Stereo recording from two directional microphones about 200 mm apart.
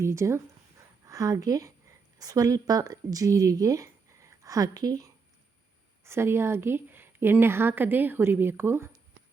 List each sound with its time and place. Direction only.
0.0 s a woman's voice: 15° right (ahead or behind)